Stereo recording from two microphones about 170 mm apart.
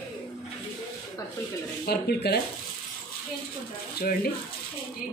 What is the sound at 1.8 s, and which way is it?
Speech, 70° left (ahead or behind).